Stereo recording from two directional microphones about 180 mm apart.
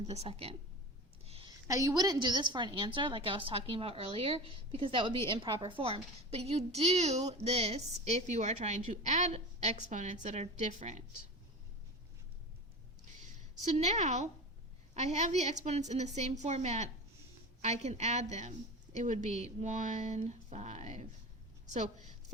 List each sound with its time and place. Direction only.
0.1 s a woman's voice: 35° right (ahead or behind)
1.2 s a sound: 35° right (ahead or behind)
1.6 s a woman's voice: 20° right (ahead or behind); by 11.0 s 40° right (ahead or behind)
13.6 s a woman's voice: 40° right (ahead or behind)